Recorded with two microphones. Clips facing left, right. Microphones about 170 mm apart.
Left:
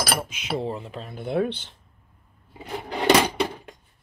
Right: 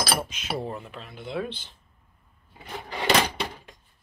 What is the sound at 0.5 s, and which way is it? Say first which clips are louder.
Speech: left 6 dB; 25° left (ahead or behind).